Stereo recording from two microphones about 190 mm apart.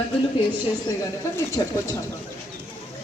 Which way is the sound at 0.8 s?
15° left (ahead or behind).